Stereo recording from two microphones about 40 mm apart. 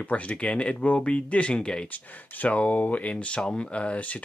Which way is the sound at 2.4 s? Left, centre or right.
Left.